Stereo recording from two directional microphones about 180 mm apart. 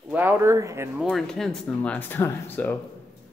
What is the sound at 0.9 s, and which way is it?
Speech, centre (ahead or behind).